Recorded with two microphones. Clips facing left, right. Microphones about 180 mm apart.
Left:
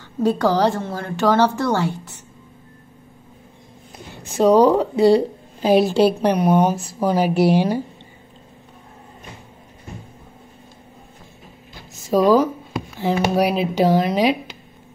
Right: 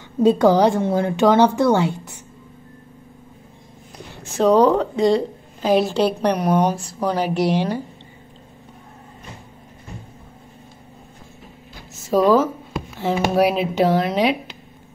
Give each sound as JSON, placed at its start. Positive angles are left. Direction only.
{"t": 0.2, "sound": "a woman's voice", "side_deg": -20}
{"t": 4.2, "sound": "a woman's voice", "side_deg": 0}
{"t": 12.1, "sound": "a woman's voice", "side_deg": 0}